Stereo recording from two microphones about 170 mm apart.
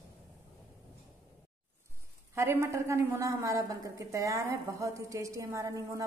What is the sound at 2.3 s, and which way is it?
A woman's voice, 15° right (ahead or behind).